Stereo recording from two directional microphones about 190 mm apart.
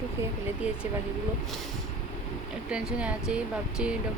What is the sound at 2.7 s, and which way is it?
Speech, 5° right (ahead or behind).